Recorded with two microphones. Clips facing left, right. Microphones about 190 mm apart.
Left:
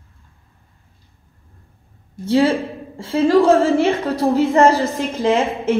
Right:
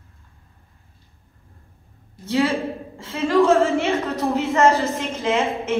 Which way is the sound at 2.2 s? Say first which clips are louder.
Left 5 dB; 30° left (ahead or behind).